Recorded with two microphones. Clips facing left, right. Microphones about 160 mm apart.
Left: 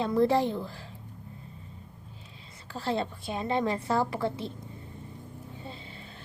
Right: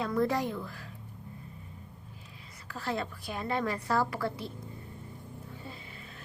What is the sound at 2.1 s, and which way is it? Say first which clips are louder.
A woman's voice: left 1 dB; 25° left (ahead or behind).